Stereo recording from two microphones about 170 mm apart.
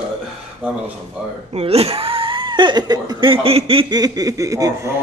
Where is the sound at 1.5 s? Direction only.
35° right (ahead or behind); by 4.8 s 20° right (ahead or behind).